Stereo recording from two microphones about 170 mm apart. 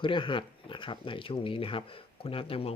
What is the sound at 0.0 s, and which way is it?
Speech, 30° left (ahead or behind).